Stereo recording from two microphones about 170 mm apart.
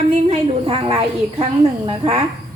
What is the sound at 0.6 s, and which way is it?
A woman's voice, 35° right (ahead or behind).